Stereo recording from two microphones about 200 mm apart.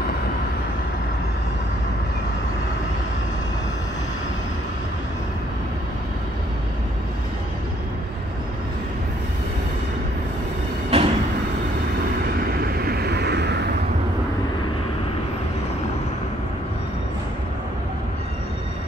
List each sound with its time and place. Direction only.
10.9 s train: 30° right (ahead or behind)
12.6 s vehicle: 50° right (ahead or behind)